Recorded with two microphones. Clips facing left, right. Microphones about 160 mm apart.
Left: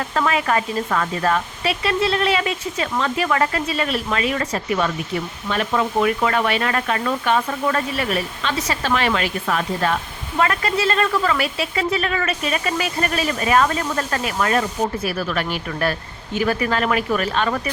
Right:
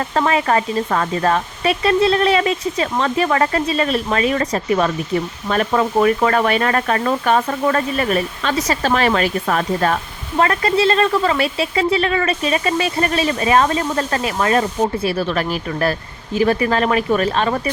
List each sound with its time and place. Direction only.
0.0 s speech: 35° right (ahead or behind)